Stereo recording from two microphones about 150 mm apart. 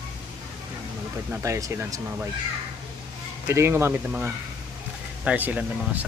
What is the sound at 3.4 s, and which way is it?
Speech, 15° right (ahead or behind).